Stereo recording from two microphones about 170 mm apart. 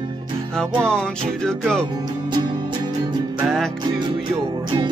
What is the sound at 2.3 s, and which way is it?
Music, 25° right (ahead or behind).